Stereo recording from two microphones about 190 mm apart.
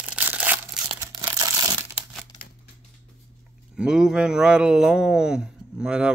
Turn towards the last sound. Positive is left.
turn(degrees=-5)  # may be behind; listen again after turning